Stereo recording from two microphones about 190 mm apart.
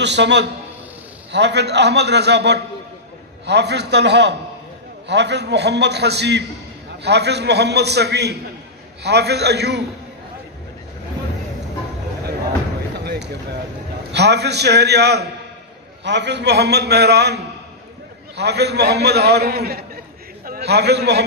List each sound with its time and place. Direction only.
0.0 s a man's voice: 65° right (ahead or behind)
13.0 s a sound: 60° right (ahead or behind)
14.1 s a man's voice: 60° right (ahead or behind)